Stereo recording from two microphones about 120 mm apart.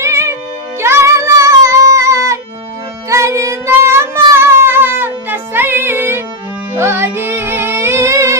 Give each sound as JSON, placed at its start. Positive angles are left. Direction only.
{"t": 0.0, "sound": "music", "side_deg": -25}